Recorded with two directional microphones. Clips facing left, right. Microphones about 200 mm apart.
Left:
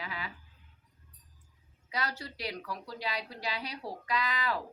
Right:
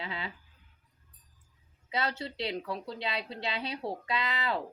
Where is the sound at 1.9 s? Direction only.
25° right (ahead or behind).